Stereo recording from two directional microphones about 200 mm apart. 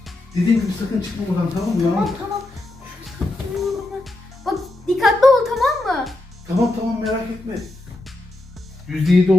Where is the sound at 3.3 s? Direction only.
Centre (ahead or behind).